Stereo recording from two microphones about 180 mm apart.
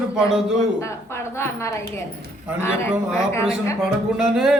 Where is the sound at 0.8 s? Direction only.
15° left (ahead or behind).